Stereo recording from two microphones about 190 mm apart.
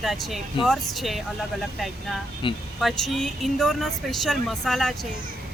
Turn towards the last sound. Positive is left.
turn(degrees=0)  # may be behind; listen again after turning